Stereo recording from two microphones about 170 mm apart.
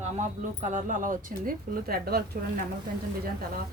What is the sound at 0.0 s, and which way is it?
Speech, 45° right (ahead or behind).